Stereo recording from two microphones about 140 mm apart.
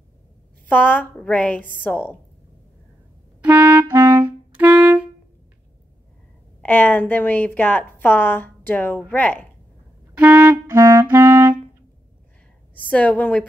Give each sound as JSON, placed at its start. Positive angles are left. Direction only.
{"t": 0.7, "sound": "a woman's voice", "side_deg": 10}
{"t": 3.3, "sound": "clarinet", "side_deg": -10}
{"t": 6.6, "sound": "a woman's voice", "side_deg": 10}
{"t": 10.1, "sound": "clarinet", "side_deg": -10}
{"t": 10.7, "sound": "clarinet", "side_deg": -25}
{"t": 12.7, "sound": "a woman's voice", "side_deg": 10}